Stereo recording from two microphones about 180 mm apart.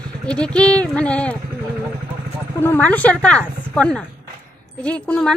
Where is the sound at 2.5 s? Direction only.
10° left (ahead or behind).